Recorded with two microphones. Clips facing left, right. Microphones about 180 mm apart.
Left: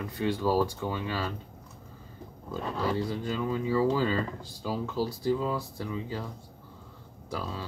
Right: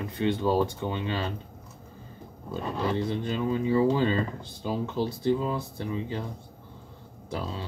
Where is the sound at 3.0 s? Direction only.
20° right (ahead or behind).